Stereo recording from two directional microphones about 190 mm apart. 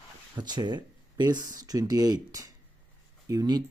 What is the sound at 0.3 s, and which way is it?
Speech, 25° right (ahead or behind).